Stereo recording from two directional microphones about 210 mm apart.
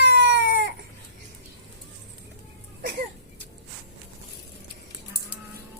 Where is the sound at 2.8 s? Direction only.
40° right (ahead or behind).